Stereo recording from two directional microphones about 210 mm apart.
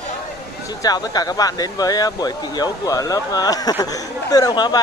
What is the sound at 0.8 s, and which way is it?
Speech, 20° left (ahead or behind).